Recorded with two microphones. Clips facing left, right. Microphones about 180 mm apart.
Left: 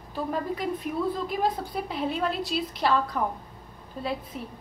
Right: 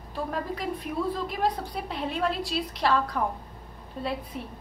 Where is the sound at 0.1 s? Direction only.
Centre (ahead or behind).